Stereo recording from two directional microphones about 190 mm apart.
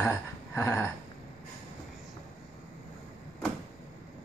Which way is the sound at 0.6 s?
15° left (ahead or behind).